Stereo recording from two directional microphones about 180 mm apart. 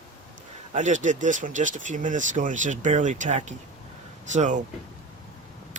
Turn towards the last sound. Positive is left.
turn(degrees=-40)  # may be behind; listen again after turning